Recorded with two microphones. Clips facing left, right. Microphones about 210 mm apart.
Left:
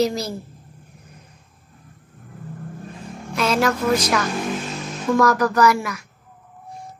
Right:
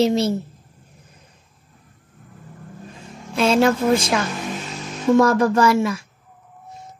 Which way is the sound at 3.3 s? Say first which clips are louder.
Right 4 dB; 30° right (ahead or behind).